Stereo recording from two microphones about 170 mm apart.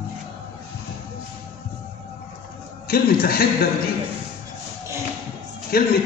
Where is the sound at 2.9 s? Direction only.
60° left (ahead or behind).